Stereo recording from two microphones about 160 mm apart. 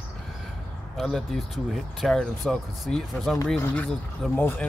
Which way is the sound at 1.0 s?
Centre (ahead or behind).